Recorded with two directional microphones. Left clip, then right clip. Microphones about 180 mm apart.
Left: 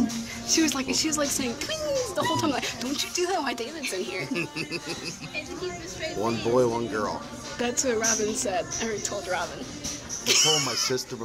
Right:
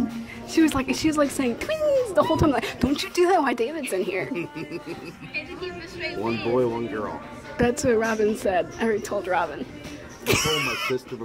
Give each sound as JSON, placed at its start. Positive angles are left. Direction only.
{"t": 0.7, "sound": "speech", "side_deg": -45}
{"t": 4.3, "sound": "speech", "side_deg": 0}
{"t": 6.4, "sound": "speech", "side_deg": -10}
{"t": 7.5, "sound": "a woman's voice", "side_deg": -40}
{"t": 10.2, "sound": "speech", "side_deg": -55}